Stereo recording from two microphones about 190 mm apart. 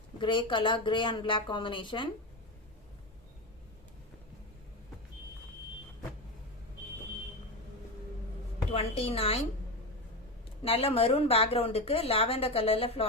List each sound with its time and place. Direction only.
0.2 s speech: 25° left (ahead or behind)
8.7 s a woman's voice: 30° left (ahead or behind)
10.6 s a woman's voice: 30° left (ahead or behind)